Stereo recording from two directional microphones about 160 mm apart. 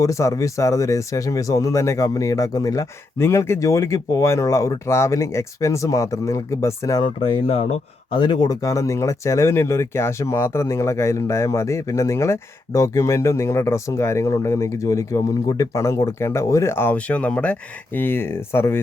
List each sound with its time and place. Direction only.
0.0 s speech: 20° left (ahead or behind)
7.2 s speech: 35° left (ahead or behind)
8.2 s speech: 25° left (ahead or behind)